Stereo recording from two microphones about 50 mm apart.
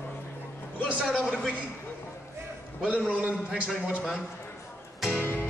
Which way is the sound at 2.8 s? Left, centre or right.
Right.